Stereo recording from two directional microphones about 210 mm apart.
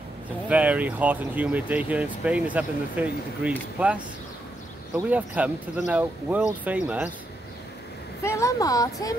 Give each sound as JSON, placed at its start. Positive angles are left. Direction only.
{"t": 0.5, "sound": "speech", "side_deg": -5}
{"t": 8.2, "sound": "speech", "side_deg": 15}